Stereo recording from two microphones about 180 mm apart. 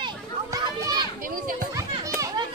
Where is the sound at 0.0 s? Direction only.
20° right (ahead or behind).